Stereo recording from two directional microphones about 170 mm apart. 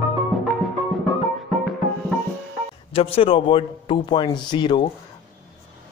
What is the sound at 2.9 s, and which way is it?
A man's voice, 35° left (ahead or behind).